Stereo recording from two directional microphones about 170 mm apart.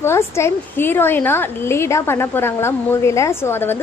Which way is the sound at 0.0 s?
15° left (ahead or behind).